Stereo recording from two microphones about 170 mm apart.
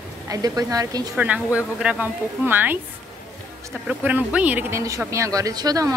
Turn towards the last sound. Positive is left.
turn(degrees=-20)  # may be behind; listen again after turning